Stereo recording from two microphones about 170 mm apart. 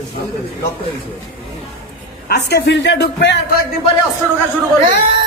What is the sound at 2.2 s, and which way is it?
A man's voice, 70° left (ahead or behind).